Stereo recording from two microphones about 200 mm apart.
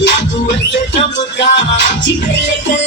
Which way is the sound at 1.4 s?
60° left (ahead or behind).